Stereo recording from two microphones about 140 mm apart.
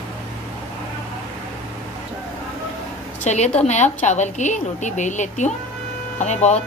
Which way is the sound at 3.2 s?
55° left (ahead or behind).